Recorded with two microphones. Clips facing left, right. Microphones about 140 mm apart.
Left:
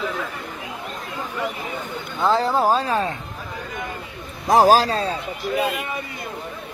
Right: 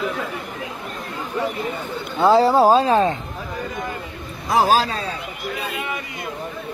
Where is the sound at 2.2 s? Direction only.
10° right (ahead or behind).